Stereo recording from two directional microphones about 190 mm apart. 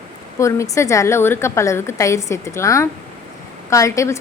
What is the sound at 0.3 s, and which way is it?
A woman's voice, 15° left (ahead or behind).